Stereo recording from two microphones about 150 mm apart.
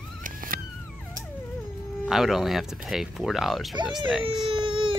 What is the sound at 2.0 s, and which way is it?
Speech, 5° right (ahead or behind).